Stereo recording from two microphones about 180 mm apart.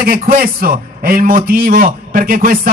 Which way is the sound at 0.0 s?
55° right (ahead or behind).